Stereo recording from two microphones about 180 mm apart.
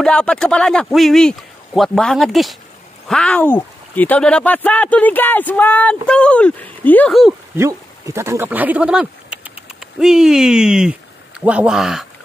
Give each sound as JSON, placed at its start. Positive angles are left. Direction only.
{"t": 0.0, "sound": "a man's voice", "side_deg": 5}
{"t": 7.5, "sound": "speech", "side_deg": -15}